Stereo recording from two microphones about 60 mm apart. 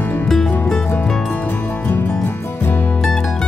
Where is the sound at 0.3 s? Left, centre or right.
Centre.